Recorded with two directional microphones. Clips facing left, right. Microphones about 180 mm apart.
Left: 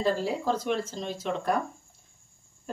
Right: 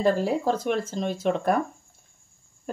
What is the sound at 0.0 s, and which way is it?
Speech, 55° right (ahead or behind).